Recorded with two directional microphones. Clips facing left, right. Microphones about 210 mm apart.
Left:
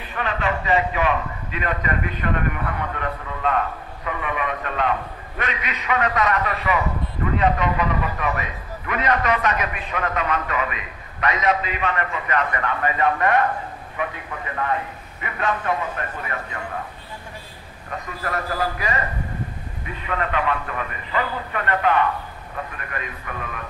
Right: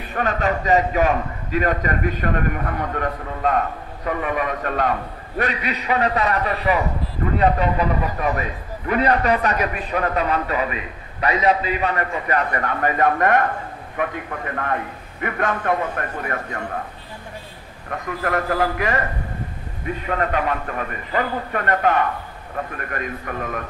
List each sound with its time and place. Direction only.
0.1 s a man's voice: 45° right (ahead or behind)
17.9 s a man's voice: 55° right (ahead or behind)
20.1 s a man's voice: 40° right (ahead or behind)